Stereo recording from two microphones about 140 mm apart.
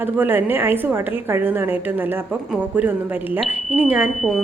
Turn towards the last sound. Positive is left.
turn(degrees=-5)  # may be behind; listen again after turning